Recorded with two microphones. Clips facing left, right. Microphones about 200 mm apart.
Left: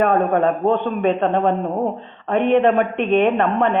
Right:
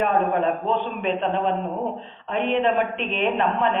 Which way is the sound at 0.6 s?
55° left (ahead or behind).